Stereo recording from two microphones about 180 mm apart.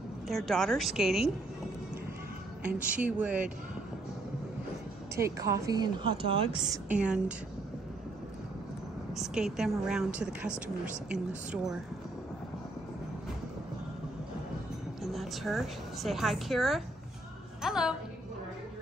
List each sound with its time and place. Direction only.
0.3 s speech: centre (ahead or behind)
2.7 s speech: 5° right (ahead or behind)
5.1 s speech: 15° right (ahead or behind)
6.9 s speech: 5° right (ahead or behind)
9.1 s speech: 5° right (ahead or behind)
15.0 s a woman's voice: centre (ahead or behind)
17.6 s a sound: centre (ahead or behind)